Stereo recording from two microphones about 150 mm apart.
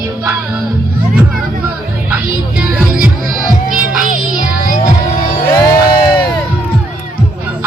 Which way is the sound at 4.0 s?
65° right (ahead or behind).